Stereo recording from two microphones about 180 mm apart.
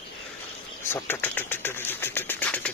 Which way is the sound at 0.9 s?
10° left (ahead or behind).